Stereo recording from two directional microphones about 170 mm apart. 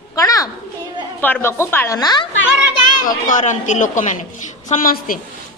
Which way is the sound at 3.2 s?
45° left (ahead or behind).